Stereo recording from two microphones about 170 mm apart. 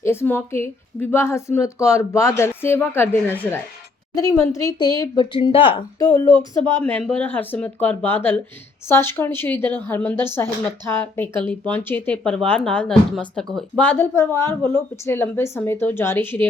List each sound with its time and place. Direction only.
0.0 s speech: 15° left (ahead or behind); by 6.1 s 30° left (ahead or behind)
7.2 s speech: 10° left (ahead or behind)